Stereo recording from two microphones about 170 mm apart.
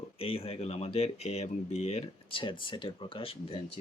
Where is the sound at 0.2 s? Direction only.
35° left (ahead or behind).